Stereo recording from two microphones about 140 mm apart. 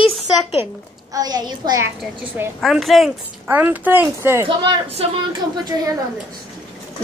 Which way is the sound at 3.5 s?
15° right (ahead or behind).